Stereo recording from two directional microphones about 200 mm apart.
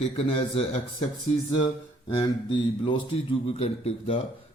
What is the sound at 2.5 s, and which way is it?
Speech, 25° left (ahead or behind).